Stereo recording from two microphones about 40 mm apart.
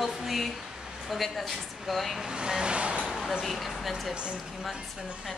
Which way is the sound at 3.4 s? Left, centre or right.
Centre.